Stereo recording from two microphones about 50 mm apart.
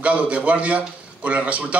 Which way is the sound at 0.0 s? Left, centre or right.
Right.